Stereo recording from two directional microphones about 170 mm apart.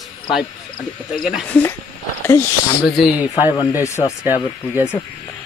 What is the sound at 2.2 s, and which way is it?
Speech, 15° left (ahead or behind).